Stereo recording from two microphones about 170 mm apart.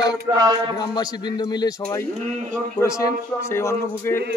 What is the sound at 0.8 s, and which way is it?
A man's voice, 25° left (ahead or behind).